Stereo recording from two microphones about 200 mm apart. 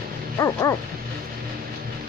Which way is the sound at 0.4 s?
15° left (ahead or behind).